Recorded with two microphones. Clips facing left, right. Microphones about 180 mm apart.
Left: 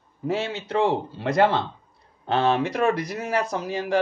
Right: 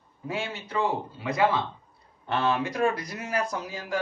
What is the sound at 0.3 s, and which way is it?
A man's voice, 85° left.